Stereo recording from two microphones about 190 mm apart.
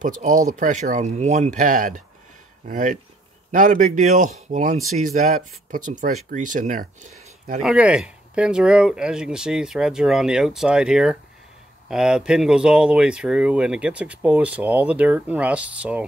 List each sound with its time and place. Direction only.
0.0 s speech: 40° right (ahead or behind)
7.6 s speech: 5° right (ahead or behind)